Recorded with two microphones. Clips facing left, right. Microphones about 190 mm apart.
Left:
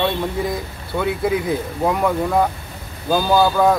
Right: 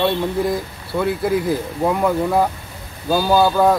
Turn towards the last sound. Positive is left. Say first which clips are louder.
# right 1 dB
turn(degrees=0)  # may be behind; listen again after turning